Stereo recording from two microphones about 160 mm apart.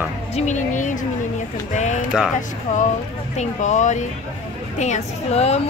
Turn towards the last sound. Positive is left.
turn(degrees=40)  # may be behind; listen again after turning